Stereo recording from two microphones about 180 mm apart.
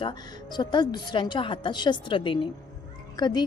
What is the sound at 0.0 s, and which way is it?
A woman's voice, 25° left (ahead or behind).